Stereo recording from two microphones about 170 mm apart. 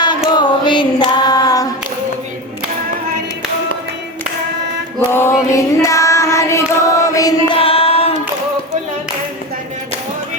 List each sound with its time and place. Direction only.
0.3 s a sound: 25° left (ahead or behind)
5.1 s female singing: 15° left (ahead or behind)
7.5 s female singing: 35° left (ahead or behind)